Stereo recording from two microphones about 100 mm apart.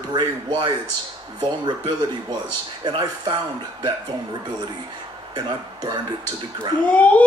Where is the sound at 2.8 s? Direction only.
50° right (ahead or behind).